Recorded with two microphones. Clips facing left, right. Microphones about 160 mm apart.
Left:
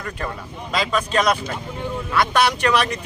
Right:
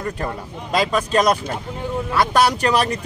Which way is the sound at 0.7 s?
40° right (ahead or behind).